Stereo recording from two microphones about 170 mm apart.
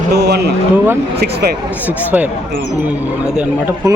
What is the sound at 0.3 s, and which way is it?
Speech, 70° right (ahead or behind).